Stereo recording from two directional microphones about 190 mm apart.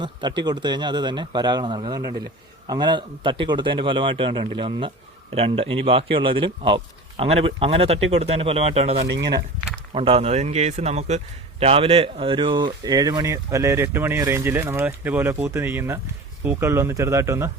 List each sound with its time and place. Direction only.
0.0 s speech: 25° right (ahead or behind)